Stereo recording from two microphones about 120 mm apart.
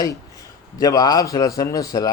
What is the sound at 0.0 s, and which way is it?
A man's voice, 30° left (ahead or behind).